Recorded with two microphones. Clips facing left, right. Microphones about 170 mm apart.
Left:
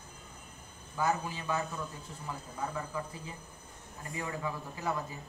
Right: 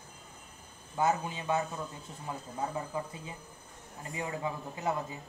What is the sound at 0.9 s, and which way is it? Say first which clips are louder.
Speech: right 2 dB; 20° right (ahead or behind).